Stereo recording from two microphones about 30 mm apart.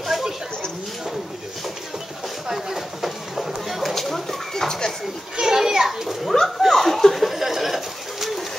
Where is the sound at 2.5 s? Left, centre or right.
Centre.